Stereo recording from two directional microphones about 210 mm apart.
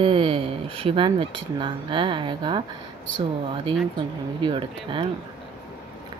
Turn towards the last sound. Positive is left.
turn(degrees=-25)  # may be behind; listen again after turning